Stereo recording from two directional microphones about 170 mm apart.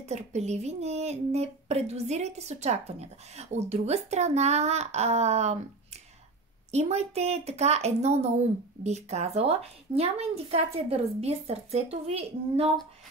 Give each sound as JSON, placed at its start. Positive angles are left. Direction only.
{"t": 0.0, "sound": "speech", "side_deg": -40}
{"t": 6.7, "sound": "speech", "side_deg": -40}